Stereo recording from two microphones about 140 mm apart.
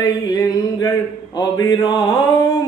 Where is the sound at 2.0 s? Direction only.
25° left (ahead or behind).